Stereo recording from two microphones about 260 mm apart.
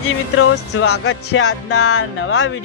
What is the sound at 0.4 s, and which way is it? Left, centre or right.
Music, left.